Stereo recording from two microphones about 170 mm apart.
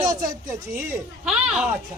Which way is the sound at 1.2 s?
5° right (ahead or behind).